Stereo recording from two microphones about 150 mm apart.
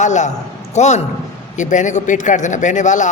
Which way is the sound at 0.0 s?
50° left (ahead or behind).